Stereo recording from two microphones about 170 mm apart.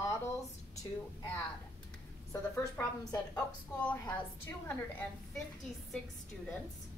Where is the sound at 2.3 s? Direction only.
15° left (ahead or behind).